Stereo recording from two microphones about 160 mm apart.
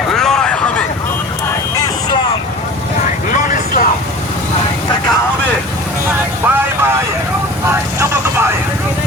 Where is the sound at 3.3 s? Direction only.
55° left (ahead or behind).